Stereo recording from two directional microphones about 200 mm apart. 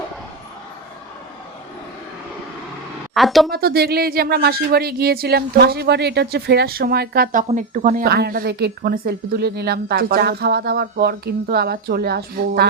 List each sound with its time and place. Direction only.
3.2 s a woman's voice: centre (ahead or behind)
3.5 s a woman's voice: 50° right (ahead or behind)
7.4 s a woman's voice: 40° right (ahead or behind)